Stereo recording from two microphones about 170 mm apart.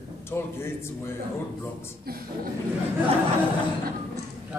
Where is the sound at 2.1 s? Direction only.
65° right (ahead or behind).